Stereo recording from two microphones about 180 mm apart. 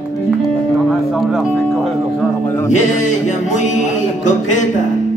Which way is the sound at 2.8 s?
40° left (ahead or behind).